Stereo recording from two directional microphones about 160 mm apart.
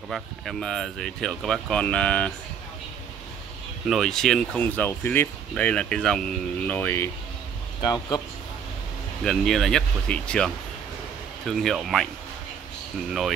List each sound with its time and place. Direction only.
0.1 s speech: centre (ahead or behind)
3.8 s speech: centre (ahead or behind)
7.8 s speech: 25° left (ahead or behind)
9.2 s speech: 5° left (ahead or behind)